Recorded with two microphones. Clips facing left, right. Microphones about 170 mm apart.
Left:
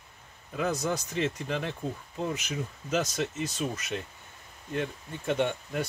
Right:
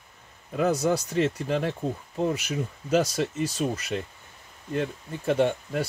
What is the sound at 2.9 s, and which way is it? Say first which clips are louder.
Speech: right 5 dB; 35° right (ahead or behind).